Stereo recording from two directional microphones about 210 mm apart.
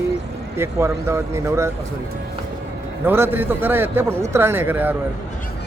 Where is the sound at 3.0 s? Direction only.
10° right (ahead or behind).